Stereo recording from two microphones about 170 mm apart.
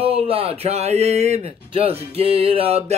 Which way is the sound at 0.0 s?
35° right (ahead or behind).